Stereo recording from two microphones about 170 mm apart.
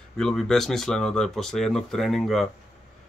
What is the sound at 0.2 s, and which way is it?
Speech, 5° left (ahead or behind).